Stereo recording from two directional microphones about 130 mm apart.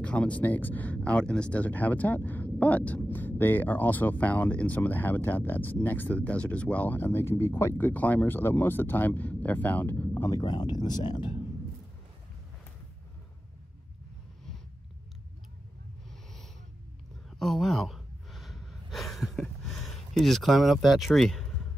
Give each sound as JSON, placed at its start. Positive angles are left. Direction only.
{"t": 0.0, "sound": "speech", "side_deg": 10}
{"t": 10.3, "sound": "speech", "side_deg": 35}
{"t": 17.4, "sound": "gasp", "side_deg": 0}